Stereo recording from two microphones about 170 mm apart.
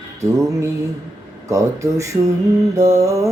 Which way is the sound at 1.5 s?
20° right (ahead or behind).